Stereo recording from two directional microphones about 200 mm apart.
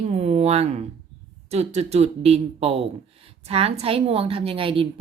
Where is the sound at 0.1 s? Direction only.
30° right (ahead or behind).